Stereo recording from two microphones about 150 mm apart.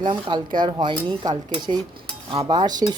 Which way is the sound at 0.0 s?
30° right (ahead or behind).